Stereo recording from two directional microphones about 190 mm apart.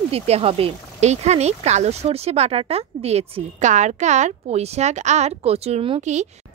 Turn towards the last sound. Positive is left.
turn(degrees=-35)  # may be behind; listen again after turning